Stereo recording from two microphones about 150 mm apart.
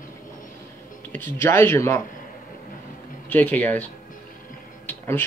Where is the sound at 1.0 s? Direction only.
10° left (ahead or behind).